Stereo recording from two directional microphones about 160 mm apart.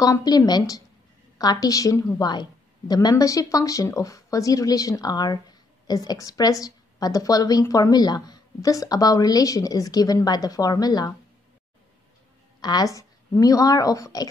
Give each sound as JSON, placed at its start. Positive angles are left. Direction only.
{"t": 0.0, "sound": "speech", "side_deg": 25}
{"t": 12.6, "sound": "speech", "side_deg": 25}